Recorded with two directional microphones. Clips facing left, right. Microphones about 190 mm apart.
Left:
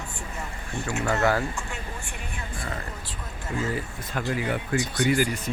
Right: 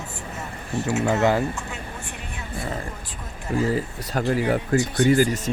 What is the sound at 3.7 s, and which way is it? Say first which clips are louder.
Speech: right 6 dB; 40° right (ahead or behind).